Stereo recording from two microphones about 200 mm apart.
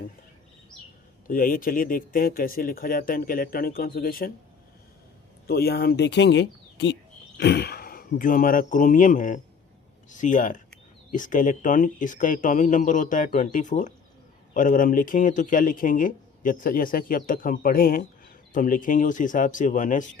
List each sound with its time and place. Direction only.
1.3 s speech: 45° left (ahead or behind)
5.5 s speech: 50° left (ahead or behind)